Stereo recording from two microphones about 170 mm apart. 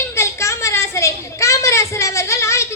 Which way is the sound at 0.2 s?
15° left (ahead or behind).